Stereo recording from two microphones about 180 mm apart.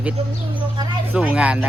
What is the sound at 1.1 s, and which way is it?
Speech, 5° right (ahead or behind).